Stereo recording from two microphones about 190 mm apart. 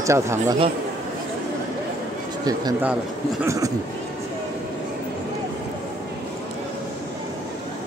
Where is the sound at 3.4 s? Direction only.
15° right (ahead or behind).